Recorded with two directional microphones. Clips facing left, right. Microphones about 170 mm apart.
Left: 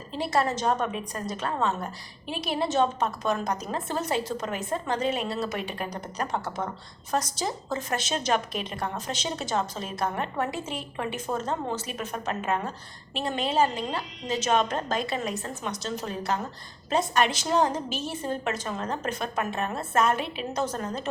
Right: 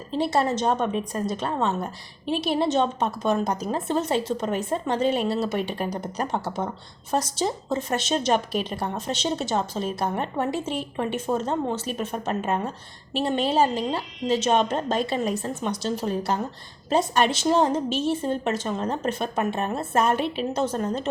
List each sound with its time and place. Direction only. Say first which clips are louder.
0.2 s a woman's voice: right 3 dB; 25° right (ahead or behind)